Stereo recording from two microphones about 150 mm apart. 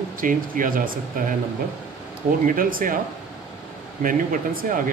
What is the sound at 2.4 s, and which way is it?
Speech, 65° right (ahead or behind).